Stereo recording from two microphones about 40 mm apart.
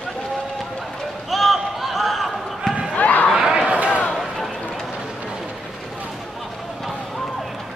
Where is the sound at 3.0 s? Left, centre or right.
Left.